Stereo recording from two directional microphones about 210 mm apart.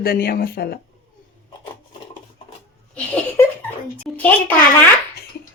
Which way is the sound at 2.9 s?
10° left (ahead or behind).